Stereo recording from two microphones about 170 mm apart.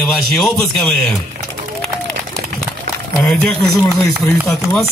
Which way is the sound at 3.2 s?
Centre (ahead or behind).